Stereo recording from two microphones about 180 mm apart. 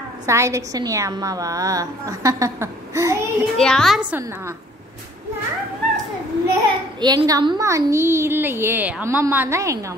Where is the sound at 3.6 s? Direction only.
5° left (ahead or behind).